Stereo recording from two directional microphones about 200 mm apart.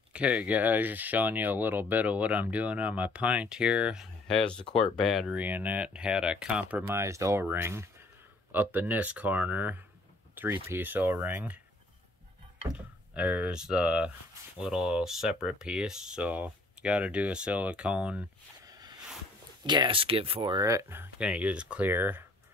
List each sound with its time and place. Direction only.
0.1 s speech: 5° right (ahead or behind)
4.6 s speech: 30° left (ahead or behind)
4.9 s speech: centre (ahead or behind)
12.7 s speech: 5° right (ahead or behind)
19.6 s speech: 20° right (ahead or behind)